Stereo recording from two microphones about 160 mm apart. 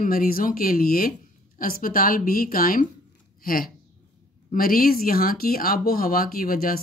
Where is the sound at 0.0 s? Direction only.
65° left (ahead or behind).